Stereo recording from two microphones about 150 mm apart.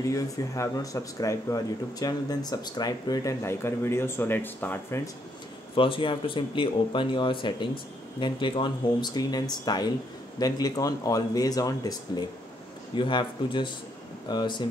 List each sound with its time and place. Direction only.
0.0 s speech: 20° left (ahead or behind)
5.8 s speech: 35° left (ahead or behind)